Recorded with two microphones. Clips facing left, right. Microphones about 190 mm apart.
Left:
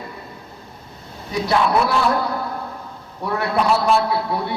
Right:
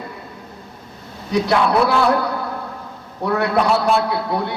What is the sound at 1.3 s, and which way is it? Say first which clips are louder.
Speech: right 2 dB; 70° right (ahead or behind).